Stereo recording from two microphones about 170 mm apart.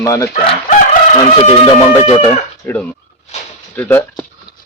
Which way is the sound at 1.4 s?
35° left (ahead or behind).